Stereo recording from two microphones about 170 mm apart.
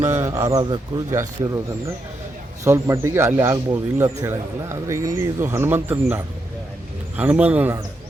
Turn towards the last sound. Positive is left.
turn(degrees=-10)  # may be behind; listen again after turning